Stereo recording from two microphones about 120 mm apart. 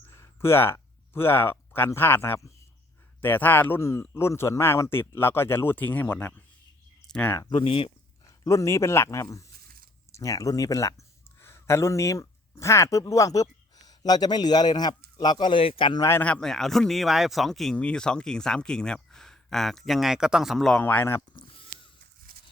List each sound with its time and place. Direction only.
0.1 s speech: 20° left (ahead or behind)
7.5 s speech: 50° left (ahead or behind)
8.4 s speech: 25° left (ahead or behind); by 16.0 s 50° left (ahead or behind)
16.0 s speech: 20° left (ahead or behind)
16.2 s speech: 5° left (ahead or behind)
20.8 s speech: 15° left (ahead or behind)